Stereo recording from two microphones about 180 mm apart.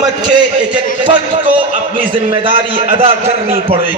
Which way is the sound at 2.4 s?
30° right (ahead or behind).